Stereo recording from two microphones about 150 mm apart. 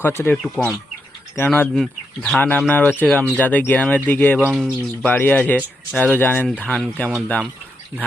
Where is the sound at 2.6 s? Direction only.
10° left (ahead or behind).